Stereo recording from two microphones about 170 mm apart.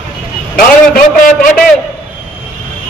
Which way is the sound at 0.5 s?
60° left (ahead or behind).